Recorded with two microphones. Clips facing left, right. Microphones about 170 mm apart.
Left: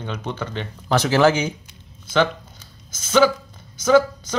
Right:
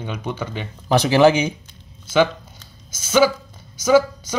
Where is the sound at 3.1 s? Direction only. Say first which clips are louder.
Even; 5° right (ahead or behind).